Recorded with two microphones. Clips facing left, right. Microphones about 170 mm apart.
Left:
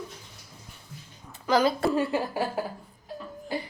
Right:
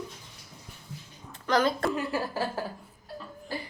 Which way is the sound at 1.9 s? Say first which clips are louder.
Left 5 dB; 25° left (ahead or behind).